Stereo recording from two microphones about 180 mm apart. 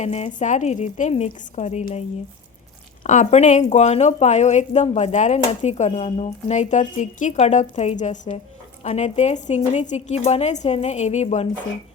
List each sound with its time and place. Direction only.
0.0 s a woman's voice: 40° left (ahead or behind)